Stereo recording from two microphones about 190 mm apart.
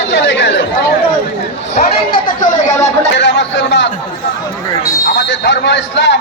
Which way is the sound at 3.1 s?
70° left (ahead or behind).